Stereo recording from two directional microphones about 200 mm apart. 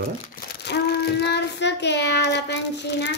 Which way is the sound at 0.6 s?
55° left (ahead or behind).